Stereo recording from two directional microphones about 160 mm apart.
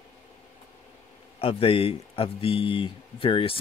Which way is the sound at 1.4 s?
35° left (ahead or behind).